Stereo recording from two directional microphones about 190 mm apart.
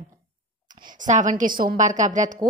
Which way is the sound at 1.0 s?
40° right (ahead or behind).